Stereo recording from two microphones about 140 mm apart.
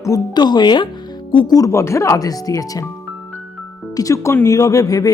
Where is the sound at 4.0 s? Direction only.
20° left (ahead or behind).